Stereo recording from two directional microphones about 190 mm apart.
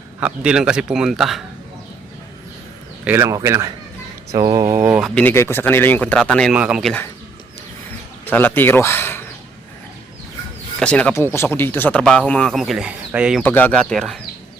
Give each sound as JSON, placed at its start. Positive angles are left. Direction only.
{"t": 0.2, "sound": "speech", "side_deg": -5}
{"t": 3.0, "sound": "speech", "side_deg": -10}
{"t": 5.0, "sound": "speech", "side_deg": 5}
{"t": 8.2, "sound": "speech", "side_deg": 10}
{"t": 10.8, "sound": "speech", "side_deg": 5}
{"t": 13.4, "sound": "speech", "side_deg": 10}